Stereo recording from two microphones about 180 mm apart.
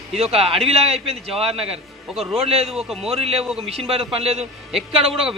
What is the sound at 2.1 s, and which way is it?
Speech, centre (ahead or behind).